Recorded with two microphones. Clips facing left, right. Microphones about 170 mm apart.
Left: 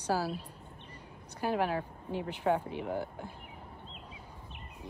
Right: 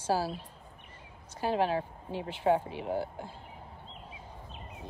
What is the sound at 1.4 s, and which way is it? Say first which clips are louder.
A woman's voice: right 2 dB; 20° right (ahead or behind).